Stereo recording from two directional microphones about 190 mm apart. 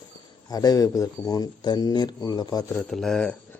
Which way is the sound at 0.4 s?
20° left (ahead or behind).